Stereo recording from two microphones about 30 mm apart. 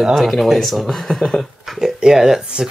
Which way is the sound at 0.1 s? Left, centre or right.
Centre.